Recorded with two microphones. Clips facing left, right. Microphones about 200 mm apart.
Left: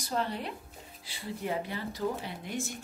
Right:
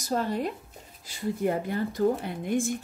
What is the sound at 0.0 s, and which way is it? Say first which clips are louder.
Speech: right 5 dB; 45° right (ahead or behind).